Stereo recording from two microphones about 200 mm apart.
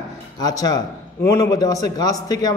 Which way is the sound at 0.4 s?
20° left (ahead or behind).